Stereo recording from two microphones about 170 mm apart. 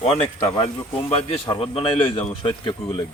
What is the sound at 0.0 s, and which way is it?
Speech, 35° left (ahead or behind).